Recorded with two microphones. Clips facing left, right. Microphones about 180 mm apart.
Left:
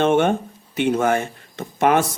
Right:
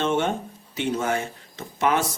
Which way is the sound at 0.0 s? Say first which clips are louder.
Left 6 dB; 60° left (ahead or behind).